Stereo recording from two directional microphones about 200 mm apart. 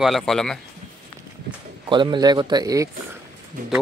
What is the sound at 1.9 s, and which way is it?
Speech, 25° right (ahead or behind).